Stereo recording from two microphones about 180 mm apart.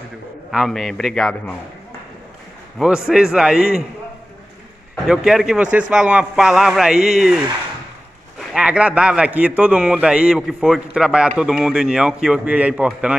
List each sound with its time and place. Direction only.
0.5 s a man's voice: centre (ahead or behind)
2.8 s a man's voice: 5° right (ahead or behind)
4.9 s a man's voice: 5° right (ahead or behind)